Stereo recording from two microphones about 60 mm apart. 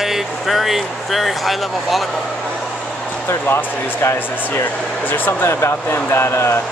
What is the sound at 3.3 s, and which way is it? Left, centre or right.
Speech, left.